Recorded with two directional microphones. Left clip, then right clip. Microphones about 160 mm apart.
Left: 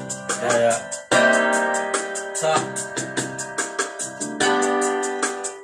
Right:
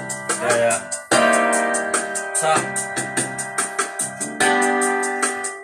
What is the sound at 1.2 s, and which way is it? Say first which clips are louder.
Keyboard: right 1 dB; 25° right (ahead or behind).